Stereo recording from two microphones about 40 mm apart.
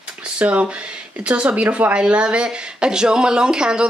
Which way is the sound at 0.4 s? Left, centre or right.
Right.